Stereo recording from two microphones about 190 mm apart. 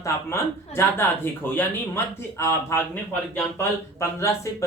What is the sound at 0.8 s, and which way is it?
Speech, 10° left (ahead or behind).